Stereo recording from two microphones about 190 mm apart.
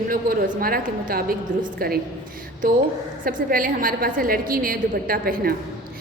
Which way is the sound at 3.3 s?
45° right (ahead or behind).